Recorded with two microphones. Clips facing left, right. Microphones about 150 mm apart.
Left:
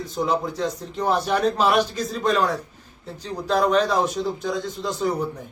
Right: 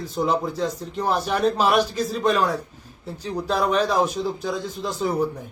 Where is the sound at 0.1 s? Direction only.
5° right (ahead or behind).